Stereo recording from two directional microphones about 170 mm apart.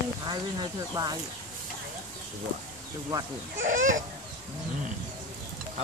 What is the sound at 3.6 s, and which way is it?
Speech, 50° right (ahead or behind).